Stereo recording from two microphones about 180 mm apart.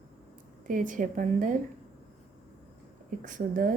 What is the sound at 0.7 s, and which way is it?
Speech, 50° right (ahead or behind).